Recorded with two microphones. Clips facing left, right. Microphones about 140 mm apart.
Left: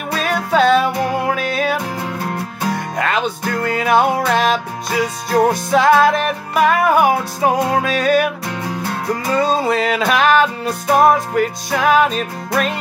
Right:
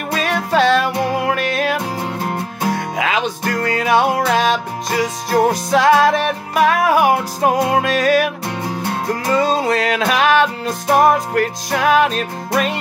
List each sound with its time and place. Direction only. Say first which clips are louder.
0.1 s music: even; centre (ahead or behind)
2.2 s music: right 2 dB; 25° right (ahead or behind)
2.7 s music: even; centre (ahead or behind)